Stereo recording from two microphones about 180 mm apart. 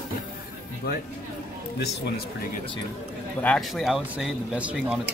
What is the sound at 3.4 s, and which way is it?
Speech, 5° left (ahead or behind).